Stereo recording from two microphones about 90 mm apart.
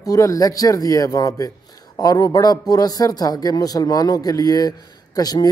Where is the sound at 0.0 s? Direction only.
40° left (ahead or behind).